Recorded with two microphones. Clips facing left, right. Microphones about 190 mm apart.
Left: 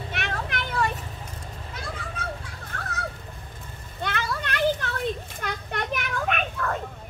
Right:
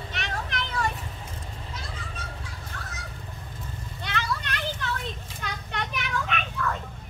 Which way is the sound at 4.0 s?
50° left (ahead or behind).